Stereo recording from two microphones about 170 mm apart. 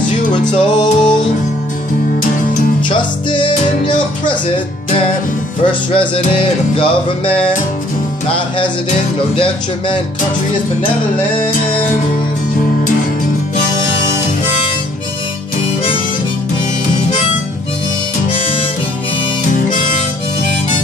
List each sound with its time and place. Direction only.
0.5 s music: 25° left (ahead or behind)
2.9 s music: 25° left (ahead or behind)
5.6 s music: 30° left (ahead or behind)